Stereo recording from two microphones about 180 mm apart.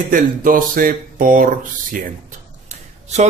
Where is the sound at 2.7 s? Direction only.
40° right (ahead or behind).